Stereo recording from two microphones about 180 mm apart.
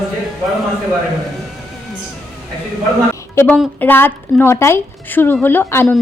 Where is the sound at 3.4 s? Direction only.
10° left (ahead or behind).